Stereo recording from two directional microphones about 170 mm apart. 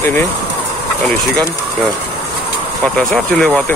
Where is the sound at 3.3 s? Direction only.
5° left (ahead or behind).